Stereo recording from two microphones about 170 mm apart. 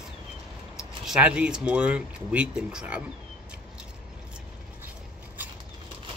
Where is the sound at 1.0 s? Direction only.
5° right (ahead or behind).